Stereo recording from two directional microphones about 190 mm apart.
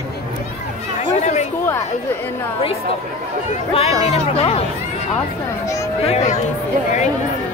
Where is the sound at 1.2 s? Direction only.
40° left (ahead or behind).